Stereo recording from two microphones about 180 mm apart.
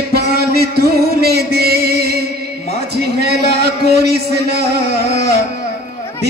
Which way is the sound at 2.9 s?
60° right (ahead or behind).